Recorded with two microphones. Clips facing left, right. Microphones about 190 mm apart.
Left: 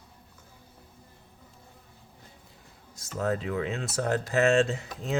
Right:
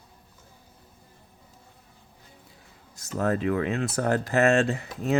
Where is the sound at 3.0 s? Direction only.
65° right (ahead or behind).